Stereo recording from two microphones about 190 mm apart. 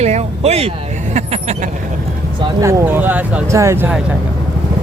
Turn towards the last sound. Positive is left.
turn(degrees=-15)  # may be behind; listen again after turning